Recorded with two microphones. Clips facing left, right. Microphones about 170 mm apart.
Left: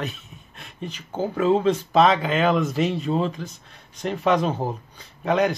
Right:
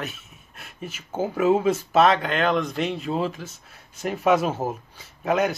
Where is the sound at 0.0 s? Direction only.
5° right (ahead or behind).